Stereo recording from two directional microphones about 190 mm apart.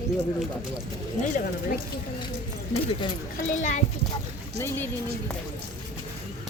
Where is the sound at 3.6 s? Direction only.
40° left (ahead or behind).